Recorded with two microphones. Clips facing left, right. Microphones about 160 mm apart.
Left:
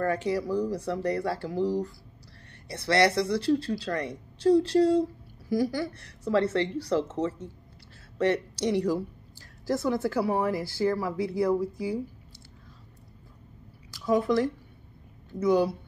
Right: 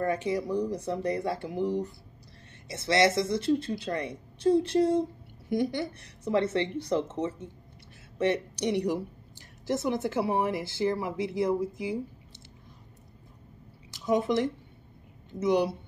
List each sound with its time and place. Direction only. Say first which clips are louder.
0.0 s speech: left 1 dB; 20° right (ahead or behind)
13.8 s speech: left 2 dB; 20° right (ahead or behind)